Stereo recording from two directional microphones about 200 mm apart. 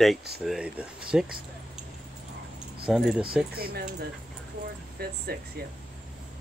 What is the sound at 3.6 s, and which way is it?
Speech, 50° right (ahead or behind).